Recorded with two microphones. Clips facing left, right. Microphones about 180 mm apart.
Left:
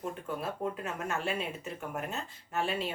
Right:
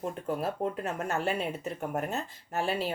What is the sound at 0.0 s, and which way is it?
Speech, 40° right (ahead or behind).